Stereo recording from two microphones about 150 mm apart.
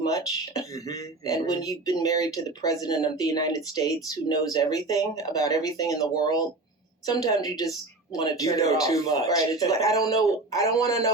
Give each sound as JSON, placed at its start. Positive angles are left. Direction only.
{"t": 0.0, "sound": "speech", "side_deg": 25}